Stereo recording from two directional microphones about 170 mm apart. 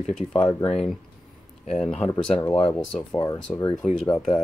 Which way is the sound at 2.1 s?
15° left (ahead or behind).